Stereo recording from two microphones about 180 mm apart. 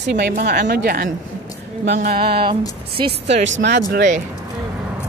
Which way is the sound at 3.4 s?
90° right.